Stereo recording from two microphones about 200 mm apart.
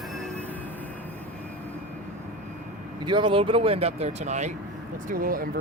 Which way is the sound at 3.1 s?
25° right (ahead or behind).